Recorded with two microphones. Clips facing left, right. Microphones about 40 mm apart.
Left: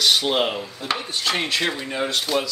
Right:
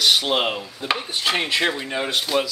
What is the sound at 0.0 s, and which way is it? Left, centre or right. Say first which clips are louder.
A man's voice: even; centre.